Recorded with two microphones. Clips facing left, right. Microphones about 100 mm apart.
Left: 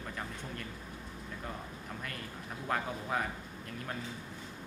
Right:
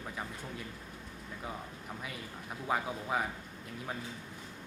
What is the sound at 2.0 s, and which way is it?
Speech, 5° right (ahead or behind).